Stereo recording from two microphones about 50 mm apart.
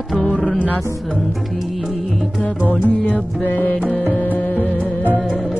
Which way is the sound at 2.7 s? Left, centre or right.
Left.